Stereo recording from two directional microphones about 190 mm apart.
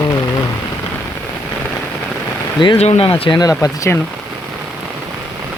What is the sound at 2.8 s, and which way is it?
Speech, 35° left (ahead or behind).